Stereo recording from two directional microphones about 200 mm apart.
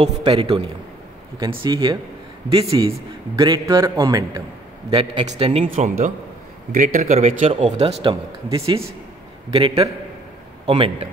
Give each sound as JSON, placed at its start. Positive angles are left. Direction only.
{"t": 0.0, "sound": "a man's voice", "side_deg": -25}
{"t": 6.7, "sound": "speech", "side_deg": -45}
{"t": 7.2, "sound": "speech", "side_deg": -30}